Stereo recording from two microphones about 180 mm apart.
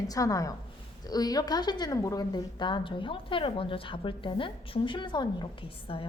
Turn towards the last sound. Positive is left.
turn(degrees=25)  # may be behind; listen again after turning